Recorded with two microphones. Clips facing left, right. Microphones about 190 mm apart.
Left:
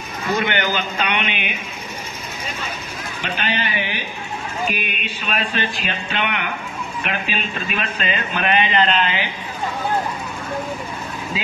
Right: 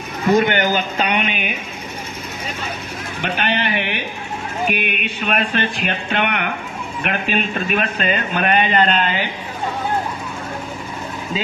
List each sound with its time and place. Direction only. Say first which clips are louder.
0.4 s a man's voice: right 4 dB; 45° right (ahead or behind)
3.2 s speech: right 4 dB; 55° right (ahead or behind)